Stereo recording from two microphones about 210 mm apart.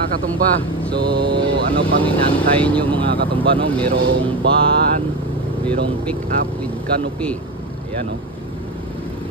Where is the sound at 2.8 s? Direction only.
25° right (ahead or behind).